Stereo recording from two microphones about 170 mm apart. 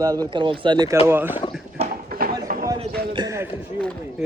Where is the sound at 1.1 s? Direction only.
10° right (ahead or behind).